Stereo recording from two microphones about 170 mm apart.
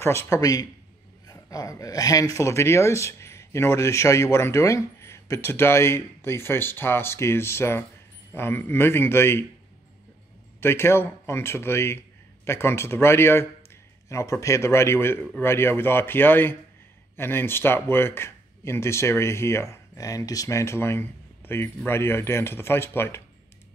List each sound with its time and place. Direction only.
0.0 s a man's voice: 15° left (ahead or behind)
10.6 s speech: 15° left (ahead or behind)